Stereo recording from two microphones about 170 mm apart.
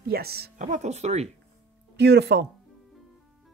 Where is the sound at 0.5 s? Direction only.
45° right (ahead or behind).